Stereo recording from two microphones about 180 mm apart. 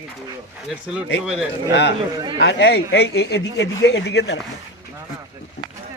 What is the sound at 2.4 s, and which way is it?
Speech, 70° left (ahead or behind).